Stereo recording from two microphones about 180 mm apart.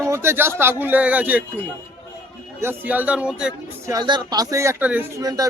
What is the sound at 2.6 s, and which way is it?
A man's voice, 10° right (ahead or behind).